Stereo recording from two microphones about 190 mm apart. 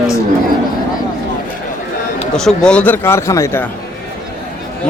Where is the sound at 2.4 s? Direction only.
5° left (ahead or behind).